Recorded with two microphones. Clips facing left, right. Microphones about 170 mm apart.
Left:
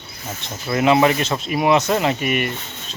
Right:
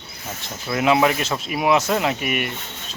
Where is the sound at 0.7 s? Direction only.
Centre (ahead or behind).